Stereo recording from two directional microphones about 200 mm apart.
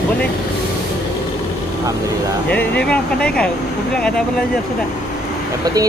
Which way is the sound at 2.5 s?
5° left (ahead or behind).